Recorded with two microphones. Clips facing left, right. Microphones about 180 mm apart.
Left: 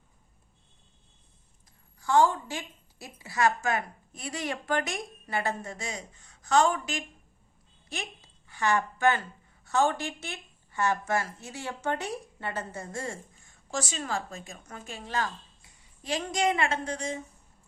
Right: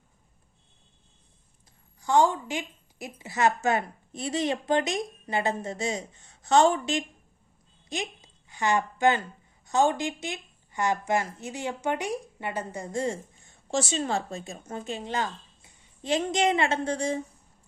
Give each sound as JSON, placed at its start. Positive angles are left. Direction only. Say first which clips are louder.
{"t": 2.0, "sound": "a woman's voice", "louder": "right 1 dB", "side_deg": -20}